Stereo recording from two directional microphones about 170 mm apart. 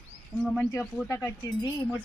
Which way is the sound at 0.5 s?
10° left (ahead or behind).